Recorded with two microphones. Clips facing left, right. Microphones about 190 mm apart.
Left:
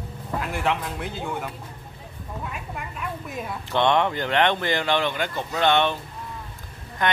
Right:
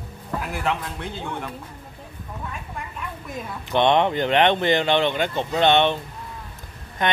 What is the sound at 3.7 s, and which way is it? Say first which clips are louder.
Speech: right 3 dB; 20° right (ahead or behind).